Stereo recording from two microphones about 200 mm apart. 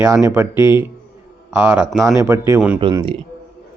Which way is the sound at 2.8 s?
20° right (ahead or behind).